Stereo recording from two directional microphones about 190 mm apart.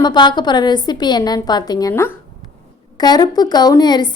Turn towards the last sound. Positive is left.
turn(degrees=20)  # may be behind; listen again after turning